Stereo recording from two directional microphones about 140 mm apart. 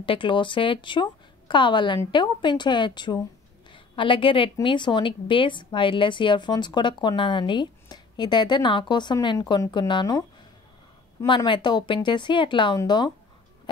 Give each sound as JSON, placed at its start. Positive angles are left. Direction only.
{"t": 0.0, "sound": "a woman's voice", "side_deg": 35}
{"t": 11.2, "sound": "speech", "side_deg": 35}